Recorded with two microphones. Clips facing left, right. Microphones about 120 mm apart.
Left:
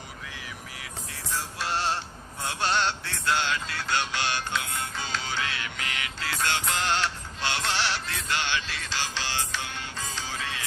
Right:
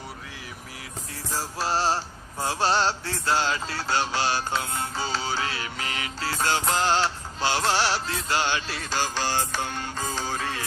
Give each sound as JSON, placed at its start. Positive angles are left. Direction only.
{"t": 1.3, "sound": "music", "side_deg": -35}